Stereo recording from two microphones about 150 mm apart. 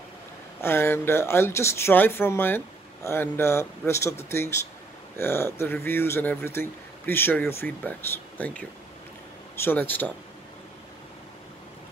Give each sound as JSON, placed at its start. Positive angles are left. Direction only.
{"t": 0.6, "sound": "speech", "side_deg": 15}